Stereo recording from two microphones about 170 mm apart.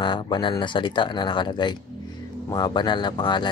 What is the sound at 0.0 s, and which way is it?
Speech, 25° left (ahead or behind).